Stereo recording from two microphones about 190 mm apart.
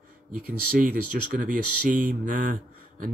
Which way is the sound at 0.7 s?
50° right (ahead or behind).